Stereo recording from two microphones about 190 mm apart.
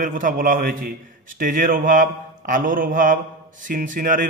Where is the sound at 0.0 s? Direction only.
45° right (ahead or behind).